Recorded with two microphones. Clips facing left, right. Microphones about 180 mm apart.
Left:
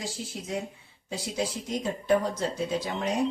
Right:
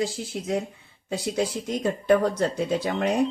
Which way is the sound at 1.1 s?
60° right (ahead or behind).